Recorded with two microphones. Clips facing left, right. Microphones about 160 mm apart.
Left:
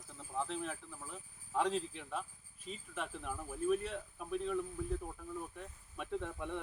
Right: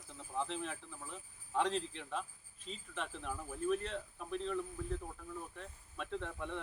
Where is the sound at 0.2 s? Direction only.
Centre (ahead or behind).